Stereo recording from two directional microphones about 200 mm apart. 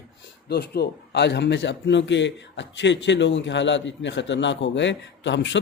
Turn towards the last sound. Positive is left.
turn(degrees=65)  # may be behind; listen again after turning